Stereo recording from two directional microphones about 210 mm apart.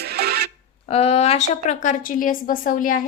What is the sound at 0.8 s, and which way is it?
A woman's voice, 30° left (ahead or behind).